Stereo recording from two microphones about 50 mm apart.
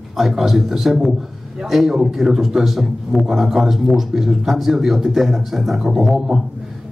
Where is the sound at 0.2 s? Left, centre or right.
Centre.